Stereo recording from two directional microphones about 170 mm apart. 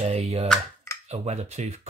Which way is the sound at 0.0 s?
40° right (ahead or behind).